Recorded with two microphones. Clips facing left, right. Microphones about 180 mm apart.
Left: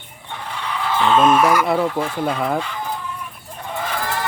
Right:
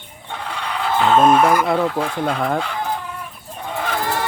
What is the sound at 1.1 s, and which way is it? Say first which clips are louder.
Speech: right 1 dB; 35° right (ahead or behind).